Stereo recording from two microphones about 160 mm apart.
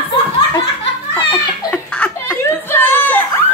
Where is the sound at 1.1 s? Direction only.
25° left (ahead or behind).